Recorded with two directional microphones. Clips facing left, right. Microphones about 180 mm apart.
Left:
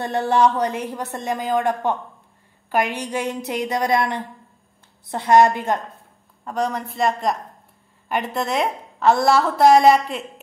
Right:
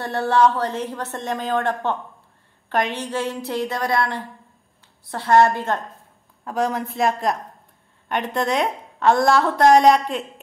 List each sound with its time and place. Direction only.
0.0 s a woman's voice: 15° left (ahead or behind)
6.4 s a woman's voice: centre (ahead or behind)